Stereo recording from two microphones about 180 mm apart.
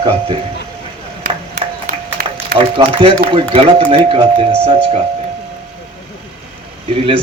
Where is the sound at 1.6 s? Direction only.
50° right (ahead or behind).